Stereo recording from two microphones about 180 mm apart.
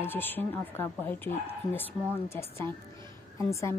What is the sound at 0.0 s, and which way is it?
A woman's voice, 10° left (ahead or behind).